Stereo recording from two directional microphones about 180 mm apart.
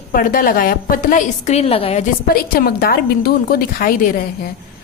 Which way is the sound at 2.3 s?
55° left (ahead or behind).